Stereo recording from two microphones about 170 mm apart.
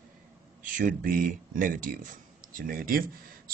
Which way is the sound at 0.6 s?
50° right (ahead or behind).